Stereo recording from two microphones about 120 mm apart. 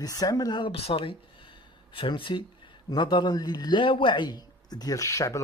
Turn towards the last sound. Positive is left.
turn(degrees=25)  # may be behind; listen again after turning